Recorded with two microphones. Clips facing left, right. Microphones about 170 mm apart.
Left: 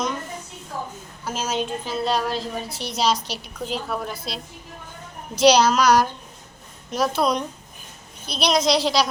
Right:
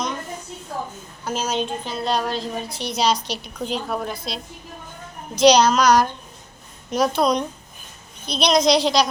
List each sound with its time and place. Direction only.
1.2 s a woman's voice: 5° left (ahead or behind)